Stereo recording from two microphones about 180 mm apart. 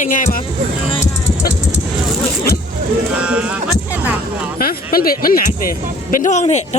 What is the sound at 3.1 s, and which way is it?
Speech, 5° right (ahead or behind).